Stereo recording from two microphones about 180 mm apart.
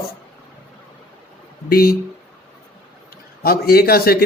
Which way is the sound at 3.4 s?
55° left (ahead or behind).